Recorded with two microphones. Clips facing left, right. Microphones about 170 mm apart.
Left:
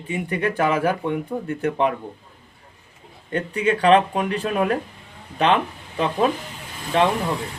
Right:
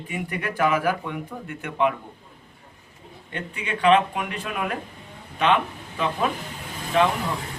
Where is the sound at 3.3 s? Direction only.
40° left (ahead or behind).